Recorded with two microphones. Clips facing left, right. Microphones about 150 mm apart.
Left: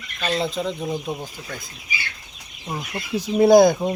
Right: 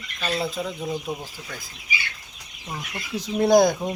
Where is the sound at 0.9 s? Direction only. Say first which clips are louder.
Left 2 dB; 20° left (ahead or behind).